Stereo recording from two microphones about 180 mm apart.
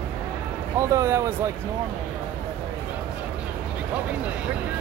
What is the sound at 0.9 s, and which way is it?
Speech, 15° right (ahead or behind).